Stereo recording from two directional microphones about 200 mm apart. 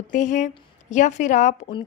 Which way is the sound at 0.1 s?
40° left (ahead or behind).